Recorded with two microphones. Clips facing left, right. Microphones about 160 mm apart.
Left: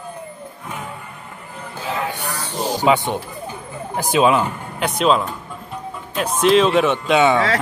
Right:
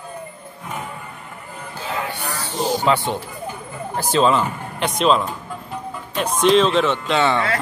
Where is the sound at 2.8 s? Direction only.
15° left (ahead or behind).